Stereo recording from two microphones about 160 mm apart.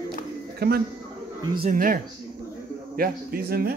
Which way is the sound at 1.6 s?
60° right (ahead or behind).